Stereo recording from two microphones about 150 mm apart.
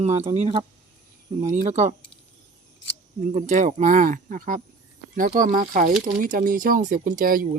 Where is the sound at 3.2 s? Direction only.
55° right (ahead or behind).